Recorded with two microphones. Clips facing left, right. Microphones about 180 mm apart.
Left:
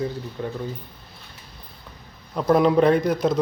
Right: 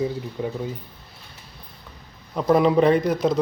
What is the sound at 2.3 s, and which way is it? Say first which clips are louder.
Speech: even; centre (ahead or behind).